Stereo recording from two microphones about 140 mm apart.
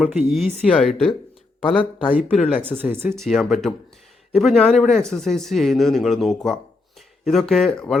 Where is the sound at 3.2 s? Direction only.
Centre (ahead or behind).